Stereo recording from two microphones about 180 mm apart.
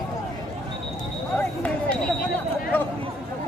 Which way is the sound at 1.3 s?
5° left (ahead or behind).